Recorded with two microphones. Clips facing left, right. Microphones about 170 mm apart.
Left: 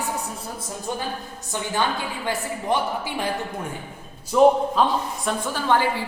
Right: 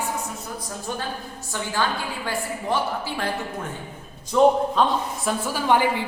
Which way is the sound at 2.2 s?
15° left (ahead or behind).